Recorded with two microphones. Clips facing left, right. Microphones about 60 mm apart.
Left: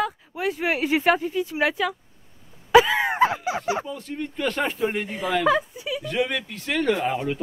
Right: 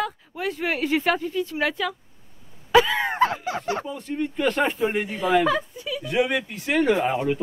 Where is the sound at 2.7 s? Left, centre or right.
Centre.